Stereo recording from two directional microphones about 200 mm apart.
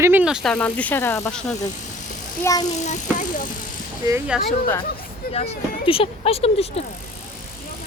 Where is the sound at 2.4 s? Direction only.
15° left (ahead or behind).